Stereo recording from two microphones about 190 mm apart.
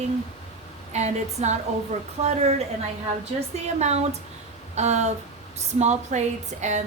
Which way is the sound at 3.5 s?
35° right (ahead or behind).